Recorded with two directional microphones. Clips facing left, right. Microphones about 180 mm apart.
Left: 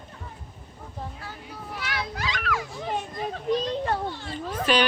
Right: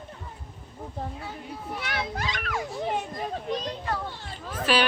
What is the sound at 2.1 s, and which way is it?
Children playing, 50° right (ahead or behind).